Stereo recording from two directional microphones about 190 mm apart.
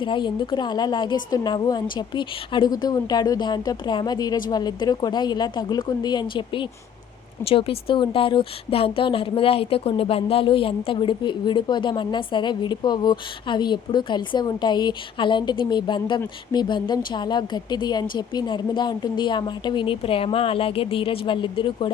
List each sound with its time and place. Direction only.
0.0 s a woman's voice: 25° left (ahead or behind)